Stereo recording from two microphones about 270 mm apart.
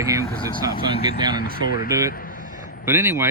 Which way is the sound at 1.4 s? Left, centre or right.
Left.